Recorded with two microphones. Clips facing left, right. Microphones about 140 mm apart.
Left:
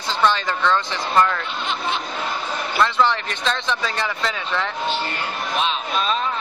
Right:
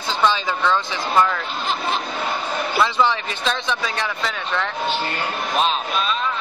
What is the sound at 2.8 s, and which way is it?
Speech, 5° right (ahead or behind).